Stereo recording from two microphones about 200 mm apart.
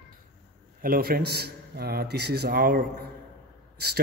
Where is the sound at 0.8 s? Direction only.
50° right (ahead or behind).